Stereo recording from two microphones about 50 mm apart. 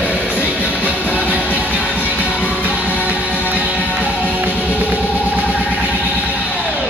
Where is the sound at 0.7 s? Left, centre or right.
Right.